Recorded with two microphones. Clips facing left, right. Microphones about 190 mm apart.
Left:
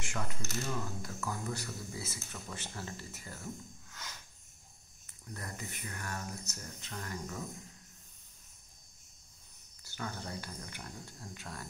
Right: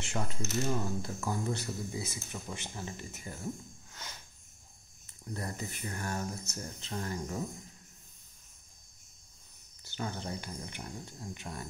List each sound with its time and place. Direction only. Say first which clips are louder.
0.0 s speech: right 4 dB; 25° right (ahead or behind)
5.3 s speech: right 5 dB; 30° right (ahead or behind)
9.8 s speech: right 4 dB; 25° right (ahead or behind)